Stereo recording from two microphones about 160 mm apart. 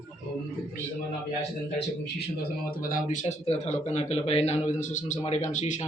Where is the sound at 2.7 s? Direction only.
60° left (ahead or behind).